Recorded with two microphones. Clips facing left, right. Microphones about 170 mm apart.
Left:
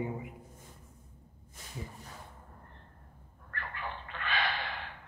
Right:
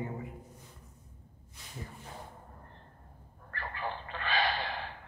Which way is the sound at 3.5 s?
35° right (ahead or behind).